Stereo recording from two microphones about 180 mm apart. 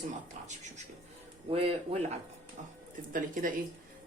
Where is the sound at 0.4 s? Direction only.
40° right (ahead or behind).